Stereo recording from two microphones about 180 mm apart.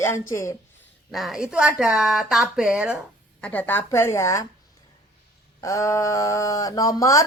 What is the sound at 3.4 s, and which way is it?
Speech, 10° left (ahead or behind).